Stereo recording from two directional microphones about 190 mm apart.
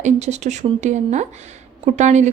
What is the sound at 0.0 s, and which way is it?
A woman's voice, 35° right (ahead or behind).